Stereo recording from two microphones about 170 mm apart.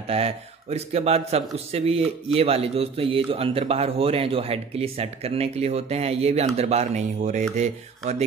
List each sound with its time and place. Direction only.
0.1 s a man's voice: 35° right (ahead or behind)